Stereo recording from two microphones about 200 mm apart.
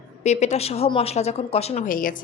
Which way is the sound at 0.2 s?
35° left (ahead or behind).